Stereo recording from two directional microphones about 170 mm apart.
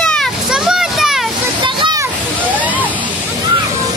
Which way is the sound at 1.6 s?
30° right (ahead or behind).